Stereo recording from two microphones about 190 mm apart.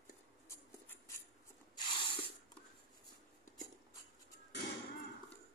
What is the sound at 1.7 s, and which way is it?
Spray, 25° left (ahead or behind).